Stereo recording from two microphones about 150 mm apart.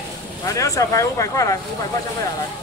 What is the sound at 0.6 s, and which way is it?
Speech, 20° left (ahead or behind).